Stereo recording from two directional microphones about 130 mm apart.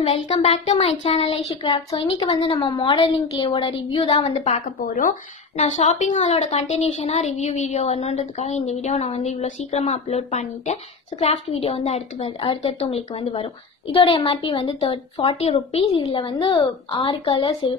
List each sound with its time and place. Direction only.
0.0 s a woman's voice: 50° left (ahead or behind); by 5.1 s 75° left (ahead or behind)
5.6 s a woman's voice: 55° left (ahead or behind); by 17.7 s 40° left (ahead or behind)